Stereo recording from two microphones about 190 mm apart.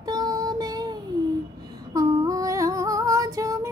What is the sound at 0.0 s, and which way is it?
Child singing, 20° right (ahead or behind).